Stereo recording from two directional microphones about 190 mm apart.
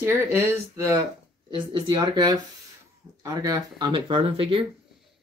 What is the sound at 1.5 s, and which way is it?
Speech, 25° right (ahead or behind).